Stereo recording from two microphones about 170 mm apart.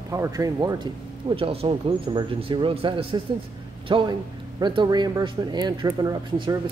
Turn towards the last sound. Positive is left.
turn(degrees=-25)  # may be behind; listen again after turning